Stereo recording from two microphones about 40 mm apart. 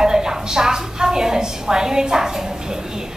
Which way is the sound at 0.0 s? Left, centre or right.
Centre.